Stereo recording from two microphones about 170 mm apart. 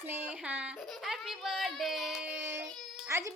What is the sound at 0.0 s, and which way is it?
A child's voice, 10° right (ahead or behind).